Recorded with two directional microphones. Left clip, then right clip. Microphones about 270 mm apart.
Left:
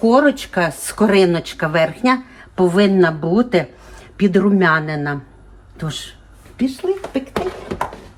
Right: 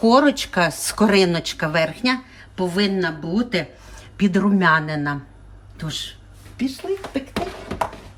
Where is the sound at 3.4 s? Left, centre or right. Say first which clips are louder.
Left 6 dB; centre.